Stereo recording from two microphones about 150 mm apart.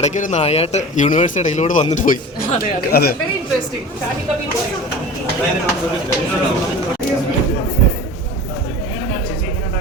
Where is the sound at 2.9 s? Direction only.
90° left.